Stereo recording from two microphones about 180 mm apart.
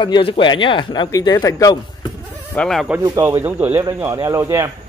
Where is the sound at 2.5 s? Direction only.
Centre (ahead or behind).